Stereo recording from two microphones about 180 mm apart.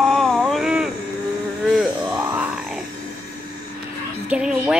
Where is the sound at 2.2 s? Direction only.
10° right (ahead or behind).